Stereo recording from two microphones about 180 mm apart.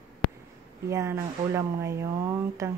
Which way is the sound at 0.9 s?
15° right (ahead or behind).